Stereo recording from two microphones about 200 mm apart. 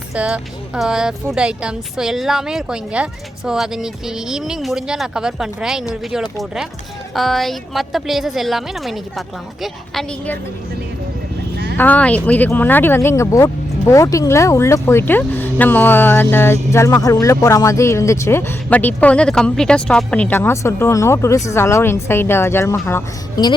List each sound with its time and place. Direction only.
0.1 s speech: 5° right (ahead or behind)
11.5 s vehicle: 55° right (ahead or behind)
11.8 s speech: 5° left (ahead or behind)